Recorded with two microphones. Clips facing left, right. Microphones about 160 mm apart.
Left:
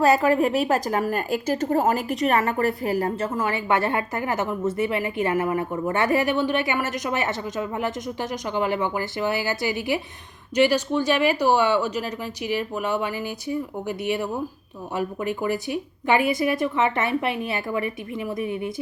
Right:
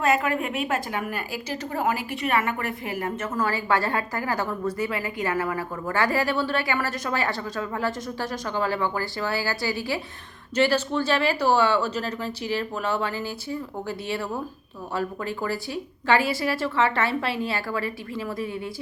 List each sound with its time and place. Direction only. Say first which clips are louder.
0.0 s a woman's voice: left 5 dB; 35° left (ahead or behind); by 18.7 s 20° left (ahead or behind)